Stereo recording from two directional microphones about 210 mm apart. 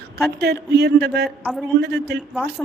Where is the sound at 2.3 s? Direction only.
5° right (ahead or behind).